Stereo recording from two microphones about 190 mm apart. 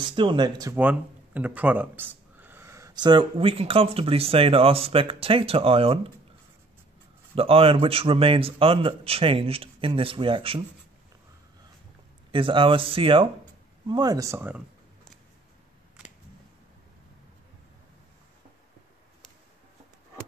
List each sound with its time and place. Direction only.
0.0 s speech: 25° right (ahead or behind)
0.7 s speech: 10° right (ahead or behind); by 5.9 s 30° right (ahead or behind)
7.3 s speech: 30° right (ahead or behind)
12.3 s speech: 25° right (ahead or behind)